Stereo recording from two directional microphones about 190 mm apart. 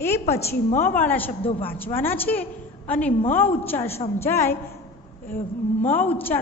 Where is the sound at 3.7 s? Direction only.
30° left (ahead or behind).